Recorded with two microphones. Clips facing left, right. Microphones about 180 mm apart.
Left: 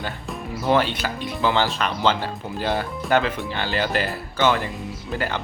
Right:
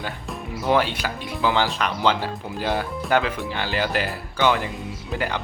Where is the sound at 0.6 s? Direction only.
10° right (ahead or behind).